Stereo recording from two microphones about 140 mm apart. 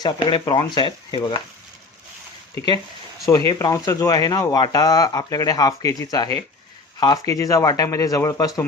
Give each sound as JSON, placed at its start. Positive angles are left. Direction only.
{"t": 0.0, "sound": "speech", "side_deg": 35}
{"t": 3.2, "sound": "speech", "side_deg": 30}